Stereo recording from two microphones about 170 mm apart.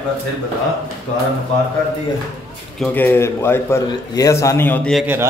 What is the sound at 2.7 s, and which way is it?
A man's voice, 10° left (ahead or behind).